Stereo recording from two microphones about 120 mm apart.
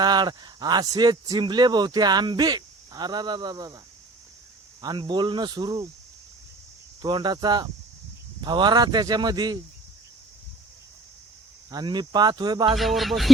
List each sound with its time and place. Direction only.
0.0 s a man's voice: 35° right (ahead or behind)
4.8 s a man's voice: 35° right (ahead or behind)
7.0 s a man's voice: 35° right (ahead or behind)
11.7 s a man's voice: 35° right (ahead or behind)
12.7 s speech: centre (ahead or behind)